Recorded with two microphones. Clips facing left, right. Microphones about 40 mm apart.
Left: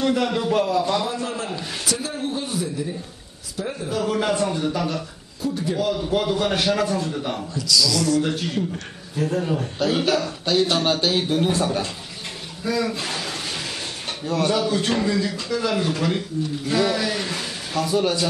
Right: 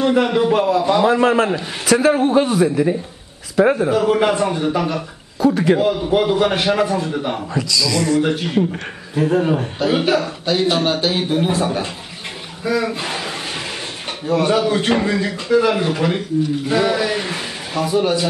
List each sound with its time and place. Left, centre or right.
0.0 s a man's voice: right
1.0 s a man's voice: right
3.9 s a man's voice: right
5.4 s a man's voice: right
5.8 s a man's voice: right
9.8 s a man's voice: centre
12.6 s a sound: right
14.2 s a man's voice: centre